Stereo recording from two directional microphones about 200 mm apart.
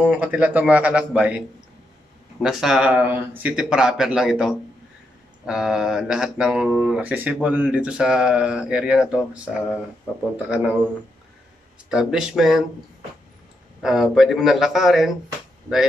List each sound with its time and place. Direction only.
0.1 s speech: 5° right (ahead or behind)
2.4 s speech: 5° right (ahead or behind)
11.9 s speech: 5° right (ahead or behind)
13.8 s speech: centre (ahead or behind)